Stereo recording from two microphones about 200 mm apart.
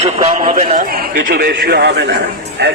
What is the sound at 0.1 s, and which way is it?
Speech, 35° right (ahead or behind).